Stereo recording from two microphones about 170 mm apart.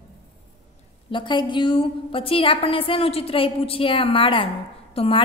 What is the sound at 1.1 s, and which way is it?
A woman's voice, 30° left (ahead or behind).